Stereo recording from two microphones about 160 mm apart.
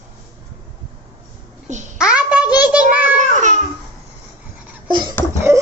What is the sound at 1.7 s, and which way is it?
Babbling, 50° right (ahead or behind).